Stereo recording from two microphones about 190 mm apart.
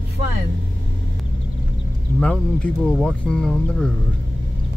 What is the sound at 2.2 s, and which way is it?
Speech, 5° left (ahead or behind).